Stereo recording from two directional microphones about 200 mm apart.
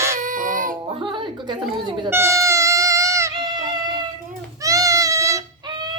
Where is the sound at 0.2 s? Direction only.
40° right (ahead or behind).